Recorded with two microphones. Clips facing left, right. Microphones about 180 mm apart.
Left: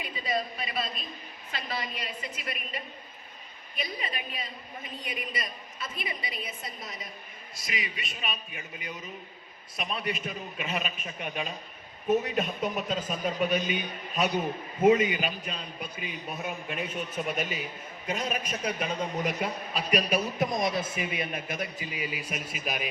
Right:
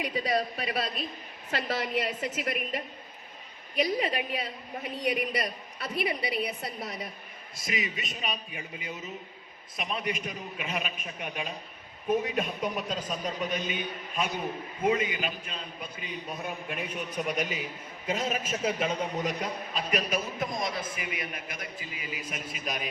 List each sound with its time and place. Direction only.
0.0 s a man's voice: 75° right (ahead or behind)
7.5 s a man's voice: 50° right (ahead or behind); by 9.0 s 30° right (ahead or behind)
9.7 s a man's voice: 20° right (ahead or behind)
10.7 s a man's voice: centre (ahead or behind)
14.8 s a man's voice: 20° left (ahead or behind)
16.6 s a man's voice: centre (ahead or behind)
17.2 s a man's voice: 15° right (ahead or behind)
20.1 s a man's voice: 20° left (ahead or behind)